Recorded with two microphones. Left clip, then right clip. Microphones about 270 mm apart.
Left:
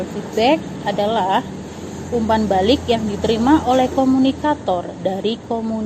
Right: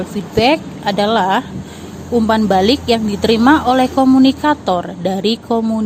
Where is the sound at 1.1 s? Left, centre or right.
Right.